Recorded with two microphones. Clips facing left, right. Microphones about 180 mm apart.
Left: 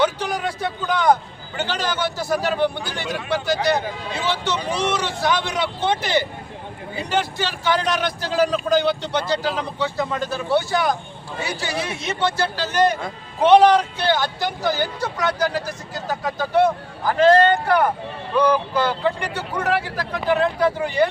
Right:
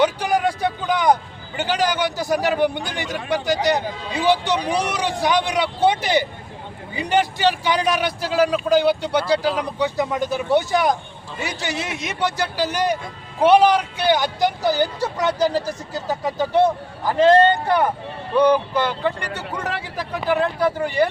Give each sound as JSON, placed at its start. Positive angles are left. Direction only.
{"t": 0.0, "sound": "vehicle", "side_deg": -10}
{"t": 0.6, "sound": "a man's voice", "side_deg": -15}
{"t": 20.0, "sound": "a man's voice", "side_deg": -10}